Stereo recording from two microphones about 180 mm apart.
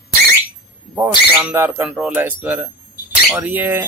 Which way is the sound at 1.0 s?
10° right (ahead or behind).